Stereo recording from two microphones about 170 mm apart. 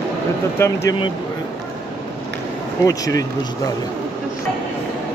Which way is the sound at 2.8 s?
20° left (ahead or behind).